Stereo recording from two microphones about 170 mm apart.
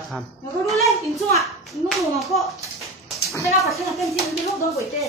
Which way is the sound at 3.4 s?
Centre (ahead or behind).